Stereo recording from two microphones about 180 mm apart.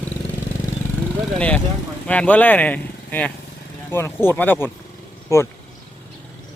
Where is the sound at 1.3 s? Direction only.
5° left (ahead or behind).